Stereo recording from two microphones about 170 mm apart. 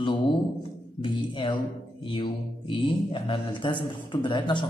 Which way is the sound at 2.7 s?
30° left (ahead or behind).